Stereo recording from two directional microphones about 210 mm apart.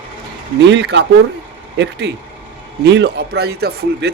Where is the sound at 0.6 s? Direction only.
55° right (ahead or behind).